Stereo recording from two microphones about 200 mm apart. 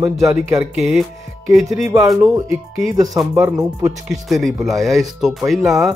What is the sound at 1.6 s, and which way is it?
Speech, 15° right (ahead or behind).